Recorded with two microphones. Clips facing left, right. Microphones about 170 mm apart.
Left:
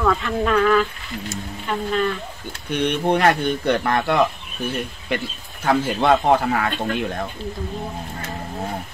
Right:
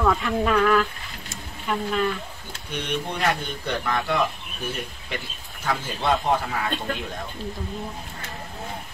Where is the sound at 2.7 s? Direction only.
65° left (ahead or behind).